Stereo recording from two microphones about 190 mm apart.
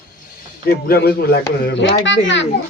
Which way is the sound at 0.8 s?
55° left (ahead or behind).